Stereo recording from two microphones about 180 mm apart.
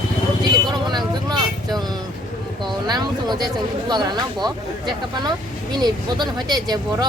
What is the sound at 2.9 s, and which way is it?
Speech, 25° right (ahead or behind).